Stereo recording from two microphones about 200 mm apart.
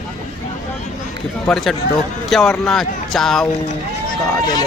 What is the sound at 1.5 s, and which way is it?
Speech, centre (ahead or behind).